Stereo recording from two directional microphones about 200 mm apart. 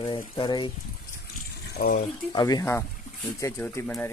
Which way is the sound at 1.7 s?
45° left (ahead or behind).